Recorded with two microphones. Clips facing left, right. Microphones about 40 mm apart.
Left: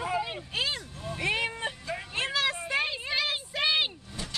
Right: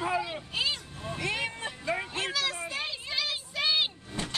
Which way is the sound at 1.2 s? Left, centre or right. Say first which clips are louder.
Left 3 dB; left.